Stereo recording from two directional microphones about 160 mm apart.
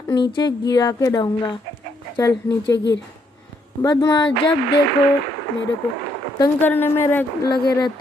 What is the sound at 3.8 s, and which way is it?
Speech, 25° left (ahead or behind).